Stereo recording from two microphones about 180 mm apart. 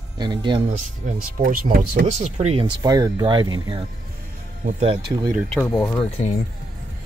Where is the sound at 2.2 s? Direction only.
35° right (ahead or behind).